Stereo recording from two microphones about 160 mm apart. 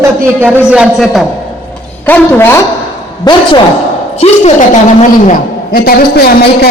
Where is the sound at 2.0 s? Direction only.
10° left (ahead or behind).